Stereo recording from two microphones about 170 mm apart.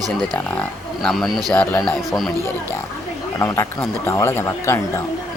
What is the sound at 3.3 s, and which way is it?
Speech, 15° left (ahead or behind).